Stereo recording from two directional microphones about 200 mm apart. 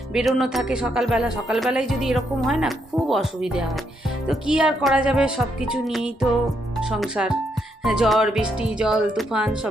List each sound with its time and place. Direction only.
0.1 s music: centre (ahead or behind)